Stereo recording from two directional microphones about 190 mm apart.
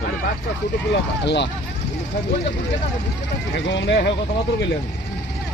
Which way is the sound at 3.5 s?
65° left (ahead or behind).